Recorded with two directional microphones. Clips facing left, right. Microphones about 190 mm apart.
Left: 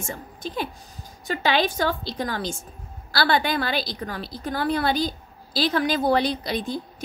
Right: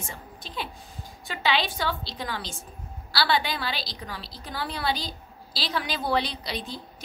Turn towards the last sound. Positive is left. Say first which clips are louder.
# left 8 dB
turn(degrees=50)  # may be behind; listen again after turning